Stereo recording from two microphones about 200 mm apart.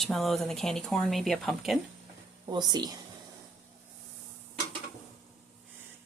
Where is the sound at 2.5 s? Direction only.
20° right (ahead or behind).